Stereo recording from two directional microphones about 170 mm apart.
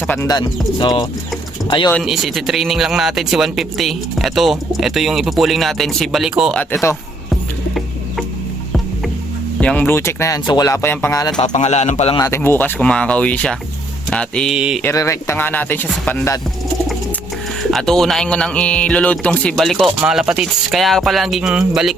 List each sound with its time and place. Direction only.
0.3 s speech: 25° left (ahead or behind)
1.9 s speech: centre (ahead or behind)
6.6 s speech: 10° left (ahead or behind)
7.3 s music: centre (ahead or behind)
9.6 s speech: 10° left (ahead or behind)
11.3 s a man's voice: 45° left (ahead or behind)
12.1 s speech: 20° left (ahead or behind); by 14.8 s 5° right (ahead or behind)
14.8 s speech: 15° left (ahead or behind)
17.6 s speech: centre (ahead or behind)